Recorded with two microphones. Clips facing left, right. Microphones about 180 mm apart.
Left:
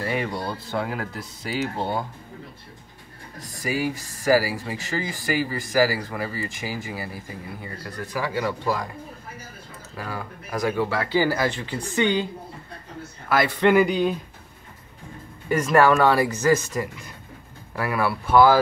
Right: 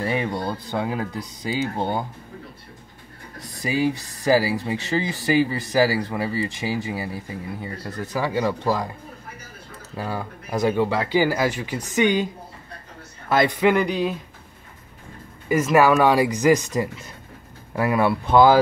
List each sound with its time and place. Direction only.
0.0 s speech: 20° right (ahead or behind)
3.6 s speech: 20° right (ahead or behind)
9.9 s speech: 25° right (ahead or behind)
13.3 s speech: 20° right (ahead or behind)
13.6 s speech: centre (ahead or behind)
15.4 s speech: 5° right (ahead or behind)